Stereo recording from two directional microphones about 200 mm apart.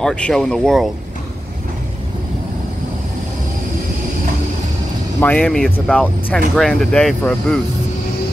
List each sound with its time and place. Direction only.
0.0 s speech: 5° left (ahead or behind)
5.2 s speech: 10° left (ahead or behind)